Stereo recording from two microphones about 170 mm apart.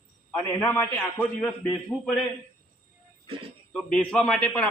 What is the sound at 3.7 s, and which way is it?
Speech, 5° left (ahead or behind).